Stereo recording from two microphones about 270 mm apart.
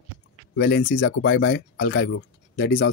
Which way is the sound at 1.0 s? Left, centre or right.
Left.